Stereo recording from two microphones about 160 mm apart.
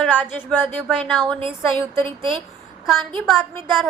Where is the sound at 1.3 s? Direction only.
35° right (ahead or behind).